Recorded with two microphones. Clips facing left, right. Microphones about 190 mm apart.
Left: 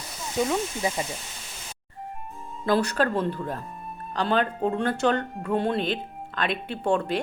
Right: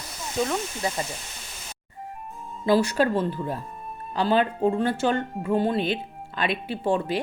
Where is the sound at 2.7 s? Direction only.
5° right (ahead or behind).